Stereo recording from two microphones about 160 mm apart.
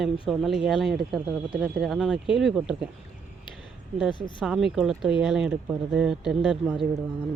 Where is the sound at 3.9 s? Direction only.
5° right (ahead or behind).